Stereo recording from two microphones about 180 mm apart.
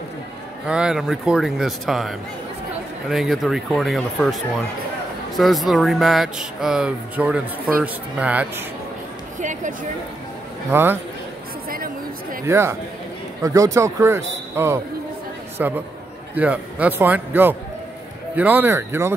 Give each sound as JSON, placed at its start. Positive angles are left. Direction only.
{"t": 0.7, "sound": "speech", "side_deg": -5}
{"t": 5.4, "sound": "a man's voice", "side_deg": 0}
{"t": 9.4, "sound": "speech", "side_deg": -45}
{"t": 10.7, "sound": "a man's voice", "side_deg": -10}
{"t": 11.7, "sound": "a sound", "side_deg": -55}
{"t": 12.4, "sound": "a man's voice", "side_deg": -15}